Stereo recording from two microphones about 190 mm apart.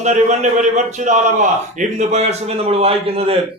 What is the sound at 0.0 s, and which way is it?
A man's voice, 40° right (ahead or behind).